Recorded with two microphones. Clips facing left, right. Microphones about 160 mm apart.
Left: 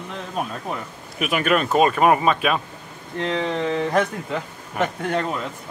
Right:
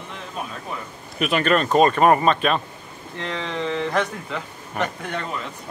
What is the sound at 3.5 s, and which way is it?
Speech, 40° left (ahead or behind).